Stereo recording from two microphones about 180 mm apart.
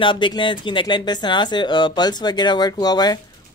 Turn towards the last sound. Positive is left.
turn(degrees=20)  # may be behind; listen again after turning